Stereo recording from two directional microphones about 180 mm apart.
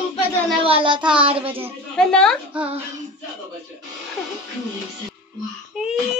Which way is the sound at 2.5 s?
30° right (ahead or behind).